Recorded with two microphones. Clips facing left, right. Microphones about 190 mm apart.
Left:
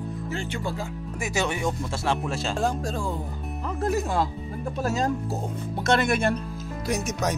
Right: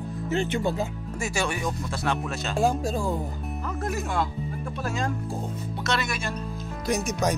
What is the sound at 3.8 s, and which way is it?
Speech, 35° left (ahead or behind).